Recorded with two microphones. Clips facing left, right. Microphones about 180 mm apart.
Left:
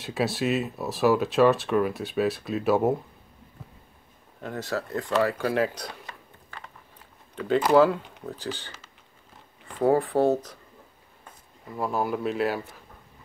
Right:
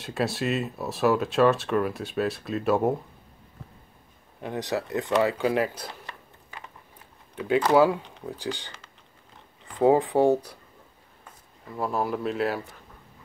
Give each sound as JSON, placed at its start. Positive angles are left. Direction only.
{"t": 0.0, "sound": "speech", "side_deg": 0}
{"t": 4.4, "sound": "speech", "side_deg": -15}
{"t": 7.3, "sound": "speech", "side_deg": -10}
{"t": 9.8, "sound": "speech", "side_deg": -15}
{"t": 11.7, "sound": "speech", "side_deg": 0}